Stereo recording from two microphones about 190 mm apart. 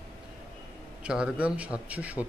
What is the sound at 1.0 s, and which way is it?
Speech, 5° right (ahead or behind).